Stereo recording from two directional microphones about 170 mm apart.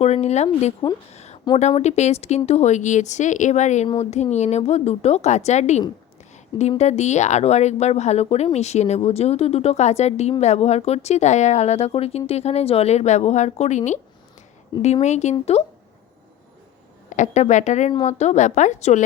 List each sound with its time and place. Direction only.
0.0 s a woman's voice: 40° left (ahead or behind)
1.1 s a sound: 40° left (ahead or behind)
1.8 s a woman's voice: 40° left (ahead or behind)
15.0 s a woman's voice: 40° left (ahead or behind)
17.1 s speech: 45° left (ahead or behind)